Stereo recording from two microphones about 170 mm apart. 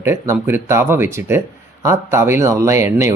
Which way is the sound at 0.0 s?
15° right (ahead or behind).